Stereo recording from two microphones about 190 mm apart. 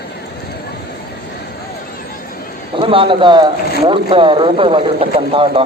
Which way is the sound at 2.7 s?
30° right (ahead or behind).